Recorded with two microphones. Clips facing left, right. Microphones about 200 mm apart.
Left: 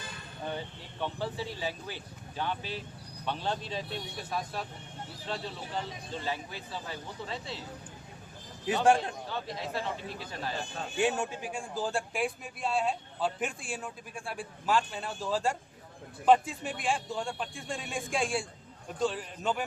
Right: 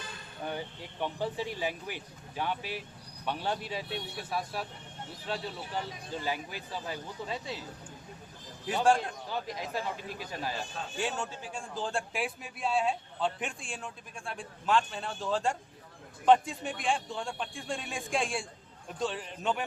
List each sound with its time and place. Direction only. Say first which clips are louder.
0.4 s speech: even; 10° right (ahead or behind)
6.2 s speech: right 1 dB; 15° right (ahead or behind)
8.6 s a man's voice: left 1 dB; 20° left (ahead or behind)
9.3 s speech: right 2 dB; 15° right (ahead or behind)
10.9 s a man's voice: left 6 dB; 15° left (ahead or behind); by 19.6 s centre (ahead or behind)